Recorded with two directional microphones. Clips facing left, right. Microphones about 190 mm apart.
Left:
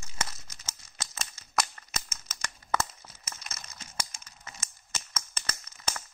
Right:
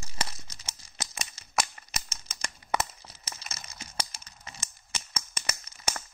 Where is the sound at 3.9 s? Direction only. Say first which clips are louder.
Right 2 dB; 35° right (ahead or behind).